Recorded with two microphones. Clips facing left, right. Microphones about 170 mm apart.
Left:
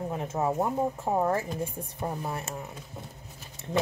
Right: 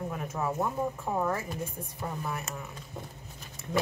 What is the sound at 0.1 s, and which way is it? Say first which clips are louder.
Speech: left 4 dB; 25° left (ahead or behind).